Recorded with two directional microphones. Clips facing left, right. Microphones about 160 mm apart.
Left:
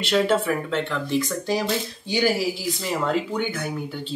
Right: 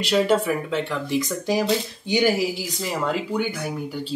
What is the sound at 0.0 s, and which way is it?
Speech, 10° right (ahead or behind).